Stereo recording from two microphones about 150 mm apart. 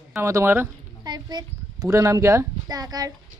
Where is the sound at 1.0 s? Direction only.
30° right (ahead or behind).